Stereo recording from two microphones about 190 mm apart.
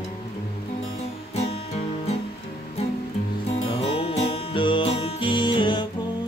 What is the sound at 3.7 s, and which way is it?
Music, 30° left (ahead or behind).